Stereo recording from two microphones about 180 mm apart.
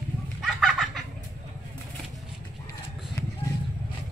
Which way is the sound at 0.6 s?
Centre (ahead or behind).